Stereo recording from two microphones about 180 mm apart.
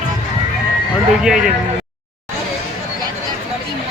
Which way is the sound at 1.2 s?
5° right (ahead or behind).